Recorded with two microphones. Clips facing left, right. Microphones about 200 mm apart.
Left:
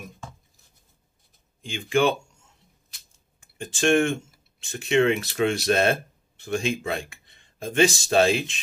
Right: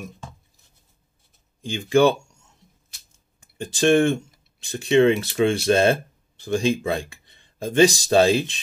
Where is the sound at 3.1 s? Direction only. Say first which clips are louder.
Right 6 dB; 35° right (ahead or behind).